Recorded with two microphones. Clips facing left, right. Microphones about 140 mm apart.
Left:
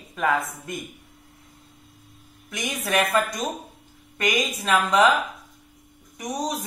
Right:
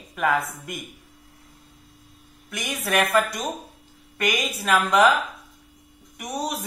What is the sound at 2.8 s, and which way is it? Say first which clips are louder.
A woman's voice: right 1 dB; centre (ahead or behind).